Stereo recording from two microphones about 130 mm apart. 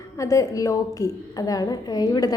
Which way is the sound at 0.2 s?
25° left (ahead or behind).